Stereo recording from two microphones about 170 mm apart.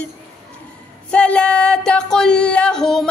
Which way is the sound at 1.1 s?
5° left (ahead or behind).